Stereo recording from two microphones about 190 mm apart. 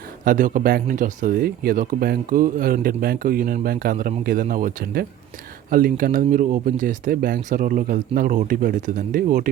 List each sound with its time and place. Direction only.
0.3 s speech: 45° right (ahead or behind)